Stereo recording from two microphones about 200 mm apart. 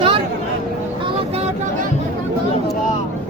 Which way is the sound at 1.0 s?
30° right (ahead or behind).